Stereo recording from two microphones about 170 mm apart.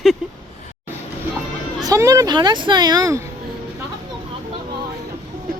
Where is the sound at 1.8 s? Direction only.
20° right (ahead or behind).